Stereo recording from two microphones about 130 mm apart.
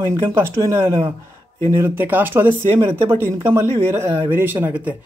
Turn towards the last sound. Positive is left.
turn(degrees=-15)  # may be behind; listen again after turning